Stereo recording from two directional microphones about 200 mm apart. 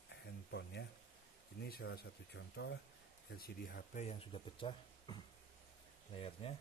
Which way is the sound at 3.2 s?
50° left (ahead or behind).